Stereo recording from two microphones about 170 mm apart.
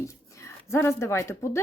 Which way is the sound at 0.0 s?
15° left (ahead or behind).